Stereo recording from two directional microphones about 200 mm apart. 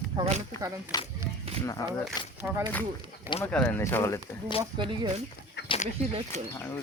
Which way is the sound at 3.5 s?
10° left (ahead or behind).